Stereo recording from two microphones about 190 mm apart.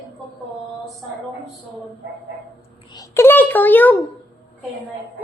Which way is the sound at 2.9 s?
15° left (ahead or behind).